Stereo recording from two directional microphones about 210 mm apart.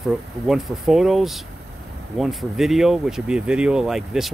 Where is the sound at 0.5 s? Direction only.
Centre (ahead or behind).